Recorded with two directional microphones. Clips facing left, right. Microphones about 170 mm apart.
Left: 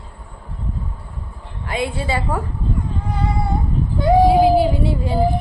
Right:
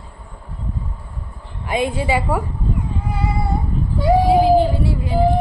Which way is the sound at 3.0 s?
5° right (ahead or behind).